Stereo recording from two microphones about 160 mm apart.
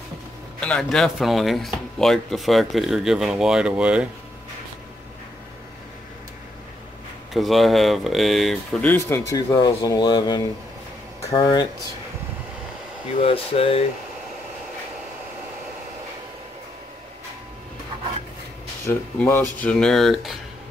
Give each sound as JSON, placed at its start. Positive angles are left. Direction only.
{"t": 0.6, "sound": "speech", "side_deg": 5}
{"t": 7.3, "sound": "speech", "side_deg": 0}
{"t": 8.8, "sound": "speech", "side_deg": 15}
{"t": 13.2, "sound": "speech", "side_deg": 35}
{"t": 18.9, "sound": "speech", "side_deg": 10}